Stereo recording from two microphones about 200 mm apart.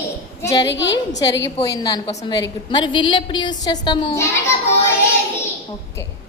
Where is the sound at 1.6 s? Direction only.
20° left (ahead or behind).